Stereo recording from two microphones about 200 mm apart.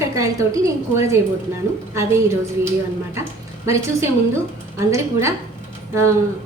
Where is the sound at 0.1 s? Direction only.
15° right (ahead or behind).